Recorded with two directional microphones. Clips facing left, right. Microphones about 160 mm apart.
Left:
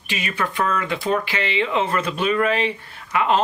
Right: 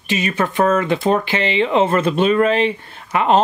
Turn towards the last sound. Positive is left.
turn(degrees=-30)  # may be behind; listen again after turning